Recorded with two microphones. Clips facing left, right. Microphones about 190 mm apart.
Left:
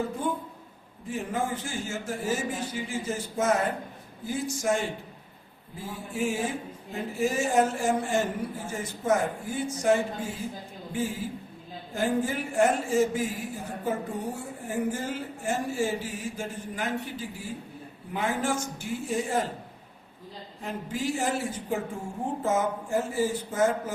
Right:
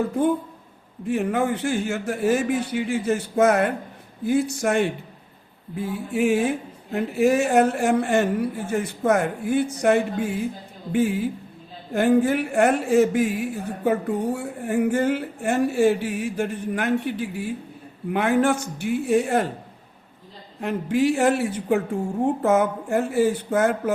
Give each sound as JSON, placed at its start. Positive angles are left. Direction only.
{"t": 1.0, "sound": "speech", "side_deg": -65}
{"t": 20.9, "sound": "speech", "side_deg": -65}